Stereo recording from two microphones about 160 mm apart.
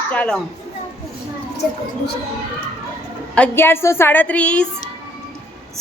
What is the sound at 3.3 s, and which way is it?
A woman's voice, 10° left (ahead or behind).